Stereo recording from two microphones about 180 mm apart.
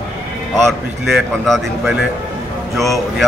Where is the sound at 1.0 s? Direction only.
Centre (ahead or behind).